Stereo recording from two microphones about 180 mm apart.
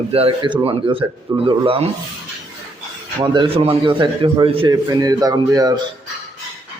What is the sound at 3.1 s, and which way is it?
A man's voice, 30° right (ahead or behind).